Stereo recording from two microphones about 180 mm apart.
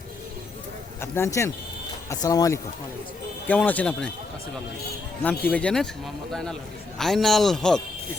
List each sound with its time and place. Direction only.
1.0 s speech: 15° left (ahead or behind)
3.4 s speech: 10° left (ahead or behind)
5.2 s speech: 10° left (ahead or behind)